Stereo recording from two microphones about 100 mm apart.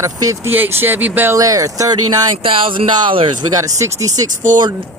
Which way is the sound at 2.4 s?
65° right (ahead or behind).